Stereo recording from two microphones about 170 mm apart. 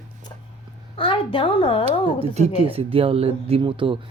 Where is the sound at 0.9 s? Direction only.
30° left (ahead or behind).